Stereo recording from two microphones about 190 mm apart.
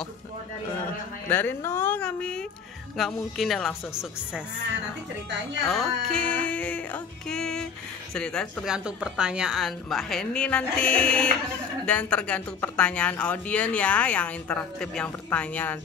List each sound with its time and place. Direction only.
1.3 s a woman's voice: 10° left (ahead or behind)
5.7 s a woman's voice: centre (ahead or behind)